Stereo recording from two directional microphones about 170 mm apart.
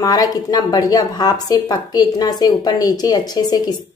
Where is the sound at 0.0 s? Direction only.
20° left (ahead or behind).